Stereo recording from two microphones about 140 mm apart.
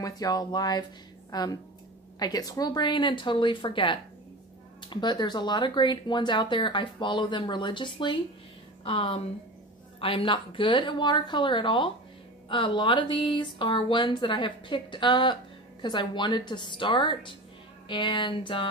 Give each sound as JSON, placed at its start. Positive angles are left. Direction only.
{"t": 0.0, "sound": "speech", "side_deg": 25}